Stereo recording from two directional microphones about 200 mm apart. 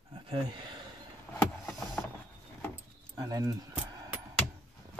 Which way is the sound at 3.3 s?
20° right (ahead or behind).